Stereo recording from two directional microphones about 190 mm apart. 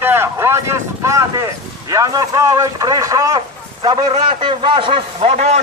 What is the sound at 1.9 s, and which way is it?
A man's voice, 20° right (ahead or behind).